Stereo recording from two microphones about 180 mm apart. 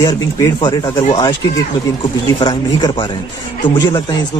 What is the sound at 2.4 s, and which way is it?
Speech, 25° left (ahead or behind).